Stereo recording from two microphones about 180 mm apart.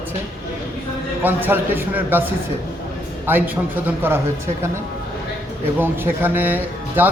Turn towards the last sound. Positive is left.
turn(degrees=-10)  # may be behind; listen again after turning